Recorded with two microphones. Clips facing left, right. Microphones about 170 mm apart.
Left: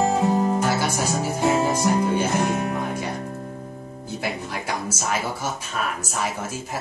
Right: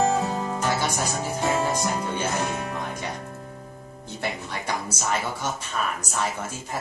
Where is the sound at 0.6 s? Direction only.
10° left (ahead or behind).